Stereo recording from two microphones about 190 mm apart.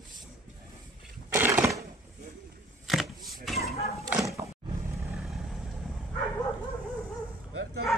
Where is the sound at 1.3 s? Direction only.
10° right (ahead or behind).